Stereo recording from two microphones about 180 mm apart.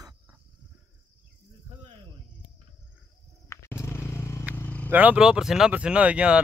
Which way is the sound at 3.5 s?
15° left (ahead or behind).